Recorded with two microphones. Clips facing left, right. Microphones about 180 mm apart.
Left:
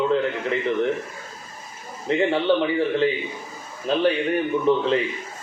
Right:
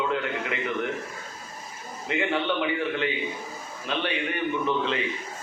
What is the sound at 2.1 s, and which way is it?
A man's voice, 35° left (ahead or behind).